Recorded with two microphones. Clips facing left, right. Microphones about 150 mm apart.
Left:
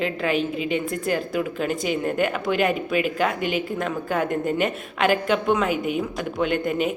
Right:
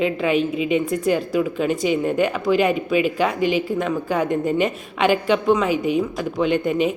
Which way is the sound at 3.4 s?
50° left (ahead or behind).